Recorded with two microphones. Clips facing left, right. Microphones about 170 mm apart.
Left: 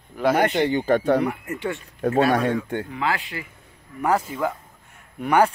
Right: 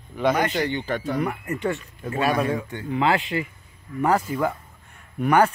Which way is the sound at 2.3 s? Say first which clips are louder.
Left 3 dB; 65° left (ahead or behind).